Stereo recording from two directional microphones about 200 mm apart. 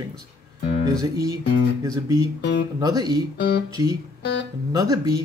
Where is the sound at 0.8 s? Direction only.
15° right (ahead or behind).